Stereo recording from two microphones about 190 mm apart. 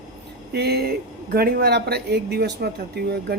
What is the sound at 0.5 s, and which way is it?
Speech, 60° right (ahead or behind).